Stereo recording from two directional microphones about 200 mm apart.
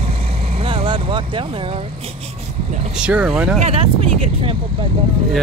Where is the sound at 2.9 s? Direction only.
5° right (ahead or behind).